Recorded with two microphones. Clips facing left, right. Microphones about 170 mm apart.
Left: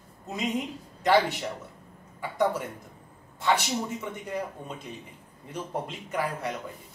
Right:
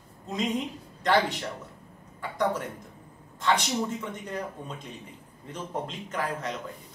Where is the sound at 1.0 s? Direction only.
10° left (ahead or behind).